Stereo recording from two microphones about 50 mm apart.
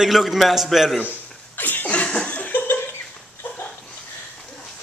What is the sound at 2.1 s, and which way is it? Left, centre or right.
Laughter, left.